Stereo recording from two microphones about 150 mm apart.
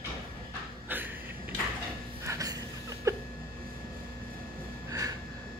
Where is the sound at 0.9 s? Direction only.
15° right (ahead or behind).